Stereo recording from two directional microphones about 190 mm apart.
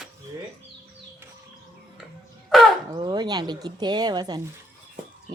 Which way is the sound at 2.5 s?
Centre (ahead or behind).